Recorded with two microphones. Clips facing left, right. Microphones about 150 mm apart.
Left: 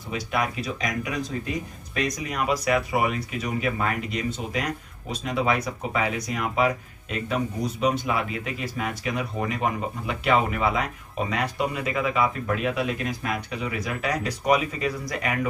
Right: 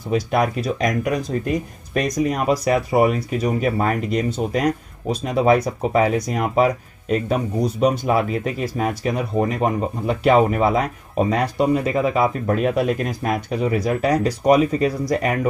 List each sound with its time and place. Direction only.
0.1 s speech: 45° right (ahead or behind)